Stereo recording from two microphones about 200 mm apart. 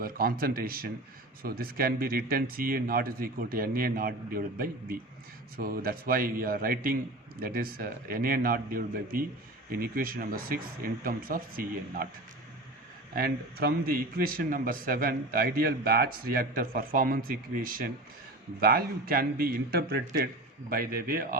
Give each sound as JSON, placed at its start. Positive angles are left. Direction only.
{"t": 0.0, "sound": "a man's voice", "side_deg": -45}
{"t": 13.1, "sound": "a man's voice", "side_deg": -50}